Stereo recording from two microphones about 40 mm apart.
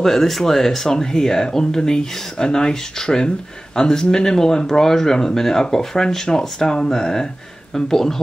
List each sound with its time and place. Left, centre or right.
0.0 s speech: centre